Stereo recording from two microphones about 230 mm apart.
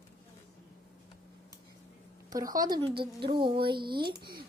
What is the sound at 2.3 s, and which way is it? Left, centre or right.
Speech, centre.